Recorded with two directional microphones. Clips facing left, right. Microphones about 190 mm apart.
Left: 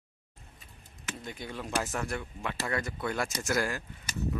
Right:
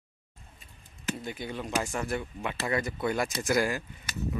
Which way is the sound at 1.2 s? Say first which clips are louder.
Right 3 dB; 5° right (ahead or behind).